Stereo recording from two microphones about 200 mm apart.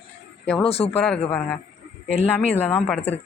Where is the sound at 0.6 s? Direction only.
30° left (ahead or behind).